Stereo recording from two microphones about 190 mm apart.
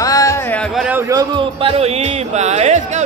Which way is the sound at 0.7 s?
10° right (ahead or behind).